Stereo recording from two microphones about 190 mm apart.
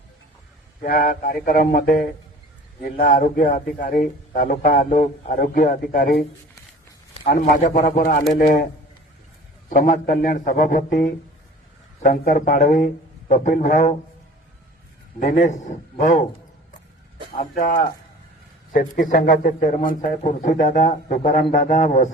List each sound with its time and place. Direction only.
0.8 s a man's voice: 45° left (ahead or behind)
7.3 s a man's voice: 50° left (ahead or behind)
7.9 s a man's voice: 50° left (ahead or behind)
9.6 s a man's voice: 45° left (ahead or behind)
12.0 s a man's voice: 50° left (ahead or behind)
15.2 s a man's voice: 40° left (ahead or behind)
17.3 s a man's voice: 45° left (ahead or behind)